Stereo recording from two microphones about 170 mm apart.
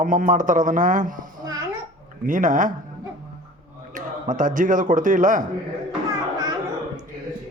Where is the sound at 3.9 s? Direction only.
50° right (ahead or behind).